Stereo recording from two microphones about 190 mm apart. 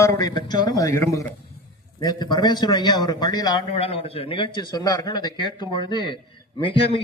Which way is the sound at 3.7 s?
30° left (ahead or behind).